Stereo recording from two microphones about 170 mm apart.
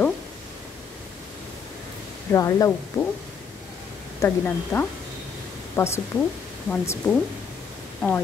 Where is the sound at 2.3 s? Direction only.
20° left (ahead or behind).